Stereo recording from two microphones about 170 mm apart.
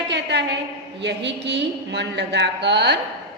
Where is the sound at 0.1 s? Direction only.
85° right.